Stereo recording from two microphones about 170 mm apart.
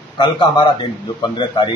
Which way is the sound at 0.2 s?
30° left (ahead or behind).